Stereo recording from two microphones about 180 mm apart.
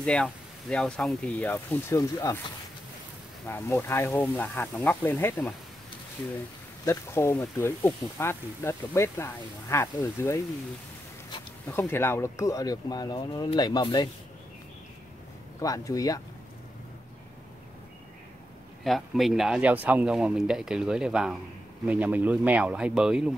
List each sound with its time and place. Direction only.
0.0 s speech: 5° left (ahead or behind)
3.4 s speech: 10° left (ahead or behind)
6.8 s speech: 15° left (ahead or behind)
11.7 s speech: 10° left (ahead or behind)
15.6 s speech: 20° left (ahead or behind)
18.9 s speech: centre (ahead or behind)